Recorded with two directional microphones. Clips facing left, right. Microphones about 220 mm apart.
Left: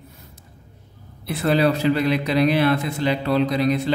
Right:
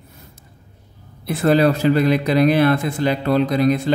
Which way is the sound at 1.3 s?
45° right (ahead or behind).